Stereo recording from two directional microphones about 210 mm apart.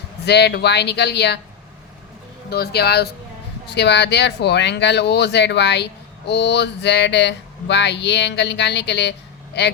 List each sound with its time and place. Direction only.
0.3 s speech: 50° left (ahead or behind)
2.5 s speech: 50° left (ahead or behind)